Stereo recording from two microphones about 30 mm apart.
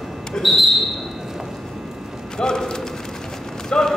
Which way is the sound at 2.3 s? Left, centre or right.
Left.